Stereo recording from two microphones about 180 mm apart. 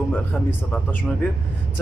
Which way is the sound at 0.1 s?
10° left (ahead or behind).